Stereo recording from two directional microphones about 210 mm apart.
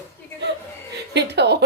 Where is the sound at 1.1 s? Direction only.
55° right (ahead or behind).